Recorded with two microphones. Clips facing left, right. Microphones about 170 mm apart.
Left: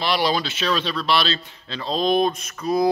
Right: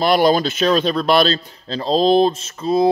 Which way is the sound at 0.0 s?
45° right (ahead or behind).